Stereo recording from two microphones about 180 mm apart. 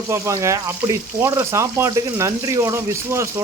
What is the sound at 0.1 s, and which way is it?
Speech, 15° right (ahead or behind).